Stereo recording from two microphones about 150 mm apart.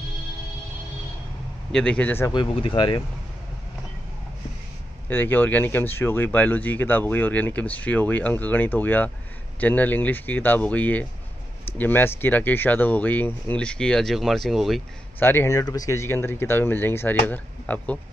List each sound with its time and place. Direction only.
1.7 s speech: 5° left (ahead or behind)
2.2 s speech: 35° left (ahead or behind)
5.1 s speech: 15° left (ahead or behind)
15.1 s speech: 15° left (ahead or behind)